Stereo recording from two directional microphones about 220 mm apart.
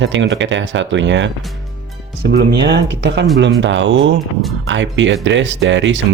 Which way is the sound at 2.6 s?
50° right (ahead or behind).